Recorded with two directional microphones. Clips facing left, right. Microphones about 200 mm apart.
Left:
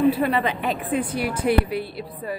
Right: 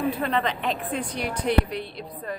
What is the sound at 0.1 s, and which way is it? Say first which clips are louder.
A woman's voice: left 4 dB; 10° left (ahead or behind).